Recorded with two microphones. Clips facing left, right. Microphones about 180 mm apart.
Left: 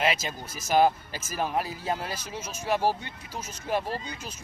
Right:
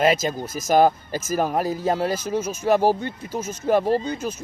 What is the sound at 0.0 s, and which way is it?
Speech, 45° right (ahead or behind).